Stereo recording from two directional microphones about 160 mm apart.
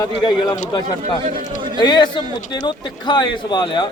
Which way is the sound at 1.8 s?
30° left (ahead or behind).